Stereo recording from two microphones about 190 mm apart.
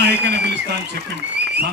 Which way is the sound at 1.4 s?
60° right (ahead or behind).